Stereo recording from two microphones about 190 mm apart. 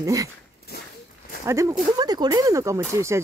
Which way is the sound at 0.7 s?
55° left (ahead or behind).